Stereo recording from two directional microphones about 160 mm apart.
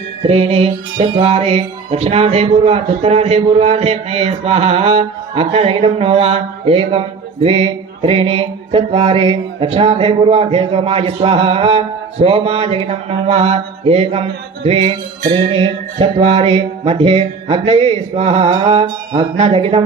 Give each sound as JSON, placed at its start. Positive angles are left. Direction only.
{"t": 0.3, "sound": "mantra", "side_deg": -40}